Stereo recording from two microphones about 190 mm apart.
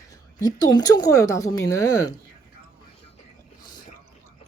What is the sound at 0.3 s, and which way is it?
A woman's voice, 20° left (ahead or behind).